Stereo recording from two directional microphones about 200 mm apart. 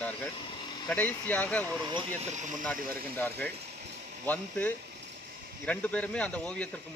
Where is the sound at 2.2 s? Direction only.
35° right (ahead or behind).